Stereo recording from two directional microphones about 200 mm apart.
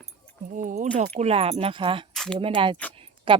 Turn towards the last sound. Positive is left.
turn(degrees=-30)  # may be behind; listen again after turning